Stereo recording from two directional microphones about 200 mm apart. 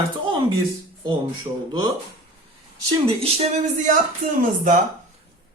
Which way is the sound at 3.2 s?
35° right (ahead or behind).